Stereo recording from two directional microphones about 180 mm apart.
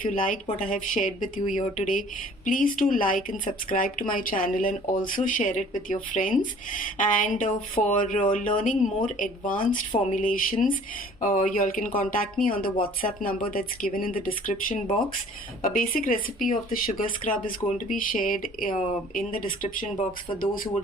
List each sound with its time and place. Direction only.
0.0 s speech: 50° left (ahead or behind)
18.7 s speech: 35° left (ahead or behind)